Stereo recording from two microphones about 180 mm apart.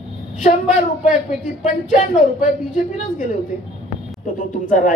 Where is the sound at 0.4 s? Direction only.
45° left (ahead or behind).